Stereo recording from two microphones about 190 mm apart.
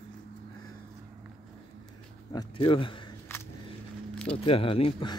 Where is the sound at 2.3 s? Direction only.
25° left (ahead or behind).